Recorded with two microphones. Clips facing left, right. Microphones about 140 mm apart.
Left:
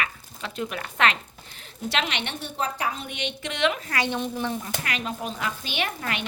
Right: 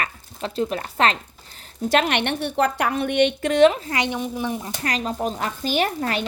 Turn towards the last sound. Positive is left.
turn(degrees=-35)  # may be behind; listen again after turning